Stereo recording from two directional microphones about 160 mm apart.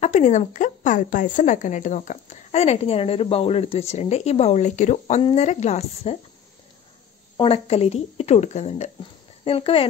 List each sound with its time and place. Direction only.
0.0 s a woman's voice: 50° left (ahead or behind)
7.3 s a woman's voice: 35° left (ahead or behind)